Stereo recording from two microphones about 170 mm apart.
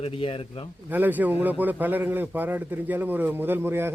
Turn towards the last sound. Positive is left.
turn(degrees=-15)  # may be behind; listen again after turning